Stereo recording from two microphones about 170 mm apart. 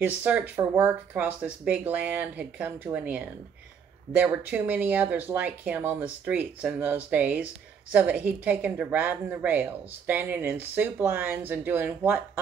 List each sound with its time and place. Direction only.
0.0 s a woman's voice: 10° right (ahead or behind)